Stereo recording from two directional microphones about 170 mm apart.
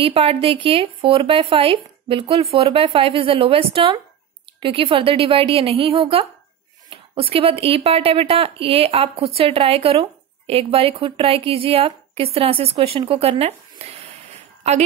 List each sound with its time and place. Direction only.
0.0 s a woman's voice: 35° right (ahead or behind)